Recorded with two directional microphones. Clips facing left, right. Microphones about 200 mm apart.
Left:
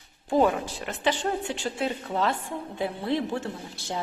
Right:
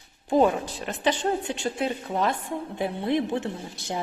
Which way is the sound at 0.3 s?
20° right (ahead or behind).